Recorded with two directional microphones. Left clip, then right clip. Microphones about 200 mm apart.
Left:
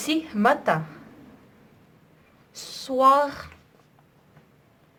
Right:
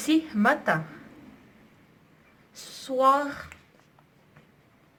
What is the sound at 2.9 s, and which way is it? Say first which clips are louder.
Speech: left 3 dB; 30° left (ahead or behind).